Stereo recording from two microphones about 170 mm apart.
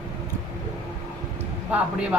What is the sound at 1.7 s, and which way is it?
Speech, 5° right (ahead or behind).